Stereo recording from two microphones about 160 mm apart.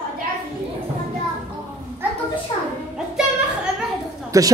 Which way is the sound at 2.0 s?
10° right (ahead or behind).